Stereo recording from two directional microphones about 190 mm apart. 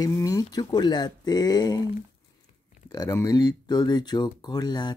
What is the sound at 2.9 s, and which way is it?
Speech, 20° left (ahead or behind).